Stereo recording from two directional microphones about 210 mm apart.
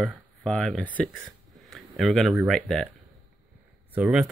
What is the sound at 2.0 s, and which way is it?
Speech, centre (ahead or behind).